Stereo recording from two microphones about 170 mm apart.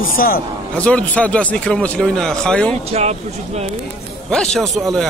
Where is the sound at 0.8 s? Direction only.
5° left (ahead or behind).